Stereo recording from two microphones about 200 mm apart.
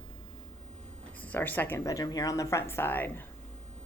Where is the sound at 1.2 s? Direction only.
10° left (ahead or behind).